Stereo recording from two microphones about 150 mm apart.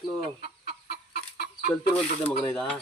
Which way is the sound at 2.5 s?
5° left (ahead or behind).